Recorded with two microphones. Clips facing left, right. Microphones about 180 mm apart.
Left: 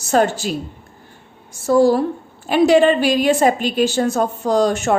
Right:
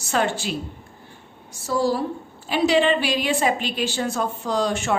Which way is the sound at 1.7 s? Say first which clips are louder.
Left 8 dB; 50° left (ahead or behind).